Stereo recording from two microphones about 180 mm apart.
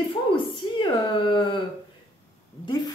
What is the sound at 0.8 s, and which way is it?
Speech, 25° left (ahead or behind).